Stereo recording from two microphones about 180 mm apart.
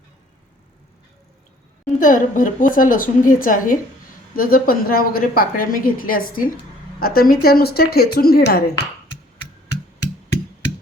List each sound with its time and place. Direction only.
2.0 s a woman's voice: 45° left (ahead or behind); by 8.7 s 60° left (ahead or behind)